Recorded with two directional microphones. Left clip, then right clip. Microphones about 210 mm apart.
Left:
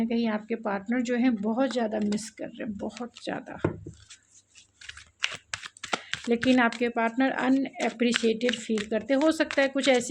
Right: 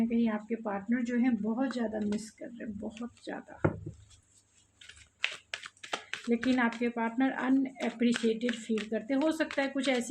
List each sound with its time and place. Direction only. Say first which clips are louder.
0.0 s speech: left 3 dB; 50° left (ahead or behind)
5.5 s speech: left 6 dB; 35° left (ahead or behind)
8.4 s speech: left 6 dB; 30° left (ahead or behind)
8.9 s speech: left 7 dB; 45° left (ahead or behind)